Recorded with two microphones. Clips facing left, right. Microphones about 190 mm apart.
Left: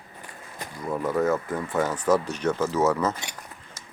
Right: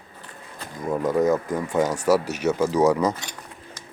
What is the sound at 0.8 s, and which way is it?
Speech, 15° right (ahead or behind).